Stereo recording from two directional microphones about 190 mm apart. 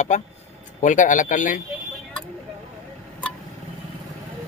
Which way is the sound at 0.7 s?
40° left (ahead or behind).